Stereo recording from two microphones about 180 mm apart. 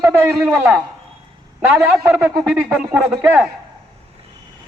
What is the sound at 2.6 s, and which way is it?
Speech, 10° right (ahead or behind).